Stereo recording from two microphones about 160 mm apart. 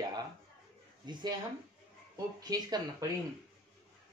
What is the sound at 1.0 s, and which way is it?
Speech, 30° right (ahead or behind).